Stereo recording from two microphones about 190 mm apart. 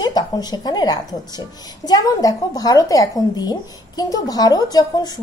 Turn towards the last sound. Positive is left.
turn(degrees=20)  # may be behind; listen again after turning